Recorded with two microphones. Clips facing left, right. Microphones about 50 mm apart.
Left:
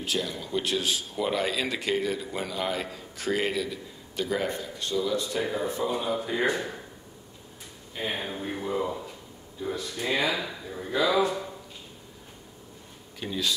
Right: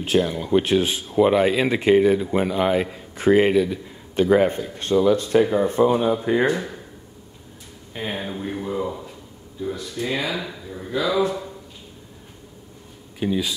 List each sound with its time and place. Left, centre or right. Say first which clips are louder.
0.0 s a man's voice: right 10 dB; right
8.1 s speech: right 5 dB; centre
13.2 s speech: right 6 dB; centre